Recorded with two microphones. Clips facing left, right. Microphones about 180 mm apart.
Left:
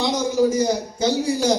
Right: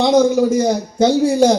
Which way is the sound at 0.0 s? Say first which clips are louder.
Right 7 dB; 55° right (ahead or behind).